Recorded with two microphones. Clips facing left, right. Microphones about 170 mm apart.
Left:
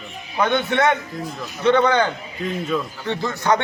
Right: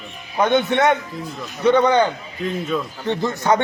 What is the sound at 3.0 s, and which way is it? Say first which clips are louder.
Speech: right 2 dB; 20° right (ahead or behind).